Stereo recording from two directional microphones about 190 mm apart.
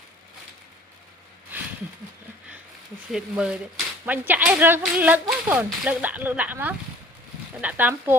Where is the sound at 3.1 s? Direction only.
5° right (ahead or behind).